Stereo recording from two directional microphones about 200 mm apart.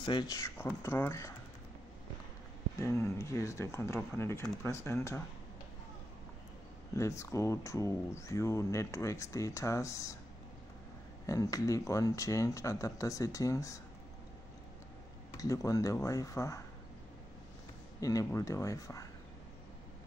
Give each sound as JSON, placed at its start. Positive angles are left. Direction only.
{"t": 0.0, "sound": "speech", "side_deg": 20}
{"t": 2.8, "sound": "speech", "side_deg": 15}
{"t": 7.0, "sound": "speech", "side_deg": 15}
{"t": 11.2, "sound": "speech", "side_deg": 15}
{"t": 15.3, "sound": "speech", "side_deg": 15}
{"t": 18.0, "sound": "speech", "side_deg": 15}